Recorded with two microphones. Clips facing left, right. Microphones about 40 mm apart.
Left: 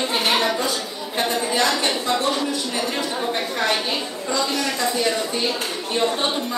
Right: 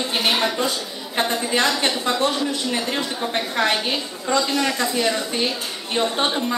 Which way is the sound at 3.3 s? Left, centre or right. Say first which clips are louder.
Right 2 dB; right.